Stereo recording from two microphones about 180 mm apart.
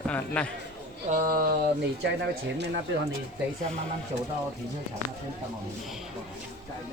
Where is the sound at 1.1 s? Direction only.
55° right (ahead or behind).